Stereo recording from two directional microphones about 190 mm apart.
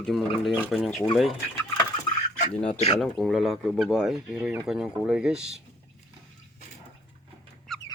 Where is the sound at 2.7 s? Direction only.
35° left (ahead or behind).